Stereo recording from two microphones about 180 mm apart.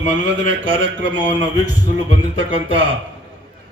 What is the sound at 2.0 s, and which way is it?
Speech, 90° right.